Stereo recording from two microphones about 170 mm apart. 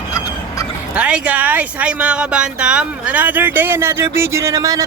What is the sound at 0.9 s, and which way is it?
Speech, 5° right (ahead or behind).